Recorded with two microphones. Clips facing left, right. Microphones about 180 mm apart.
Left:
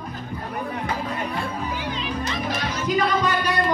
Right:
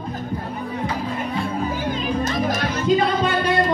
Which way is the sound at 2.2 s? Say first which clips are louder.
Right 5 dB; 45° right (ahead or behind).